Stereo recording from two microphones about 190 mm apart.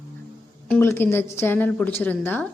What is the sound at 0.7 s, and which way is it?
A woman's voice, 10° left (ahead or behind).